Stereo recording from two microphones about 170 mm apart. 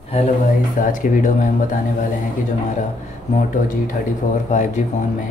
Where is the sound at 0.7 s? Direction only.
50° left (ahead or behind).